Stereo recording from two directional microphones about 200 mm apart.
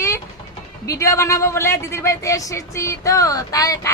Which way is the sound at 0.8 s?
15° left (ahead or behind).